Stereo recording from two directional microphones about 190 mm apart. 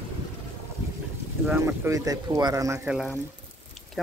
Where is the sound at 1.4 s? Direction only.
15° right (ahead or behind).